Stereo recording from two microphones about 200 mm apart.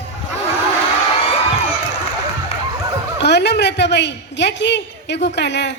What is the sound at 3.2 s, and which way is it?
A woman's voice, 55° left (ahead or behind).